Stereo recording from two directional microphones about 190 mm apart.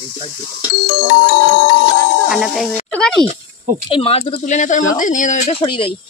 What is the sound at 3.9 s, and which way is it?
Speech, 30° left (ahead or behind).